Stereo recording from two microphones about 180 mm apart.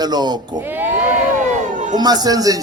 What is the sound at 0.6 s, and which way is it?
Speech, 10° right (ahead or behind).